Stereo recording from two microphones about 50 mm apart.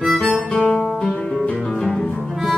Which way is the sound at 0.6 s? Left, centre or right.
Left.